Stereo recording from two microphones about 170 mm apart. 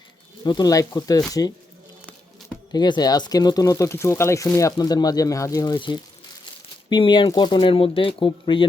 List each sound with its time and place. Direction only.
0.4 s speech: 25° left (ahead or behind)
2.7 s speech: 25° left (ahead or behind)